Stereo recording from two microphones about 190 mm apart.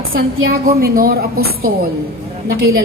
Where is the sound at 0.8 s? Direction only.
50° right (ahead or behind).